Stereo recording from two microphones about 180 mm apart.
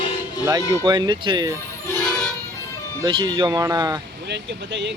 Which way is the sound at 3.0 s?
25° right (ahead or behind).